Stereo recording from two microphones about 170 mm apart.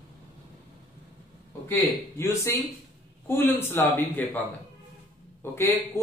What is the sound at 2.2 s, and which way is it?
A man's voice, 15° left (ahead or behind).